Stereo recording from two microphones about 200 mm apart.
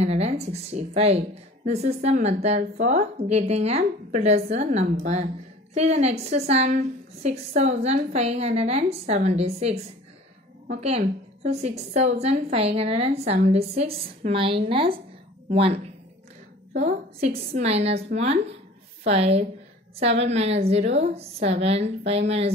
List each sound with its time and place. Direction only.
0.0 s a woman's voice: 35° right (ahead or behind)